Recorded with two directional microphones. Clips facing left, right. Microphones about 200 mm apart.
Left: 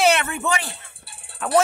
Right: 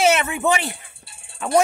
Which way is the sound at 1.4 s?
Centre (ahead or behind).